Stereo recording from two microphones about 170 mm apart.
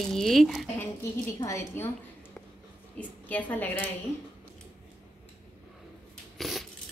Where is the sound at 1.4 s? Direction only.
15° left (ahead or behind).